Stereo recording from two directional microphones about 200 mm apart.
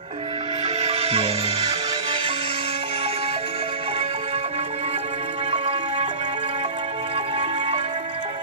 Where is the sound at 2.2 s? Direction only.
25° right (ahead or behind).